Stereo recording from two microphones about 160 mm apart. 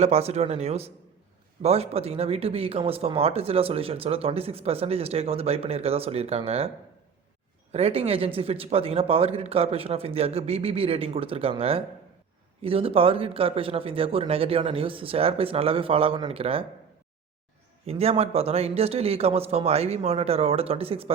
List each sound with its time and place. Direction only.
0.0 s speech: 40° right (ahead or behind)
7.7 s speech: 40° right (ahead or behind)
17.8 s speech: 40° right (ahead or behind)